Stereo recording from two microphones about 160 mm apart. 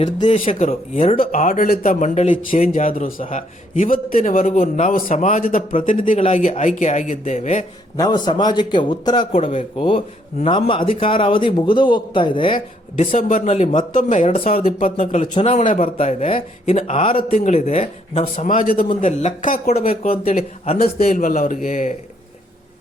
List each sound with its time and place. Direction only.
0.2 s a man's voice: 35° left (ahead or behind)
1.1 s a man's voice: 60° left (ahead or behind)
7.9 s a man's voice: 25° left (ahead or behind)
13.0 s a man's voice: 45° left (ahead or behind)
14.5 s a man's voice: 65° left (ahead or behind); by 17.2 s 35° left (ahead or behind)
17.2 s speech: 55° left (ahead or behind)
17.5 s a man's voice: 40° left (ahead or behind)
18.3 s speech: 55° left (ahead or behind)
19.8 s speech: 60° left (ahead or behind)
20.2 s a man's voice: 40° left (ahead or behind)
20.7 s speech: 65° left (ahead or behind)